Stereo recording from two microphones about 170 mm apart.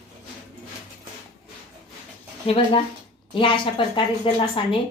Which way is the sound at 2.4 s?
30° left (ahead or behind).